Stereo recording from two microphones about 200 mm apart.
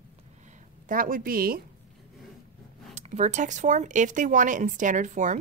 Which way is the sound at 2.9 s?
35° right (ahead or behind).